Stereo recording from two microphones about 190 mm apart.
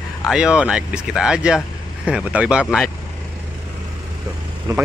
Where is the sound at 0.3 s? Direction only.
5° right (ahead or behind).